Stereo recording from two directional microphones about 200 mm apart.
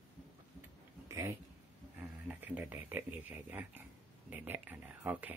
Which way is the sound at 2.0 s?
10° right (ahead or behind).